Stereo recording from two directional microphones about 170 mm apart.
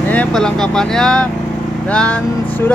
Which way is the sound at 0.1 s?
5° left (ahead or behind).